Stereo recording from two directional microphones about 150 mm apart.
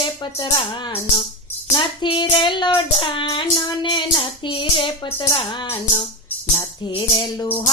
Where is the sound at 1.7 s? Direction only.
30° left (ahead or behind).